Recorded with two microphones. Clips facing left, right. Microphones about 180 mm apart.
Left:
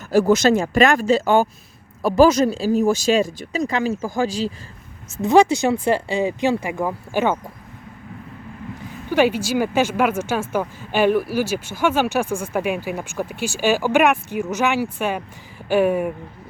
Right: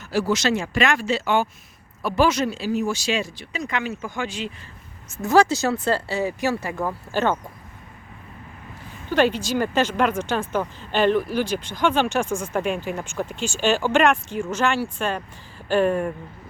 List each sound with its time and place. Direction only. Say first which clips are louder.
0.1 s speech: left 7 dB; 50° left (ahead or behind)
5.2 s speech: left 3 dB; 20° left (ahead or behind)
9.0 s speech: left 2 dB; 10° left (ahead or behind)